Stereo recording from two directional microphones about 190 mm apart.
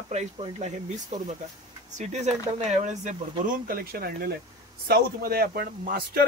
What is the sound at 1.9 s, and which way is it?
Speech, 40° right (ahead or behind).